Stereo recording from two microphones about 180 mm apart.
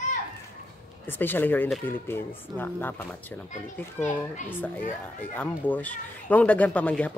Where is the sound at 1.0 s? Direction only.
10° left (ahead or behind).